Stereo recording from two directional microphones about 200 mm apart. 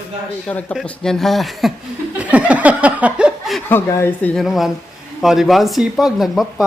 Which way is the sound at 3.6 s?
10° left (ahead or behind).